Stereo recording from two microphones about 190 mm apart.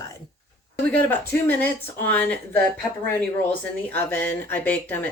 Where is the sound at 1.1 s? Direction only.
10° left (ahead or behind).